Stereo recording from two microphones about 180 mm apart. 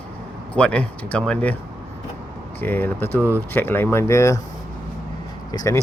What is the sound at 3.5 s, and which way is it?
Speech, 10° left (ahead or behind).